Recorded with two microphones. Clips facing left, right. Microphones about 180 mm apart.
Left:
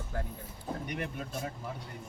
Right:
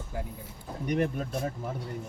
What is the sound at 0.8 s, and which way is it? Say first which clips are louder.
Speech: right 9 dB; 40° right (ahead or behind).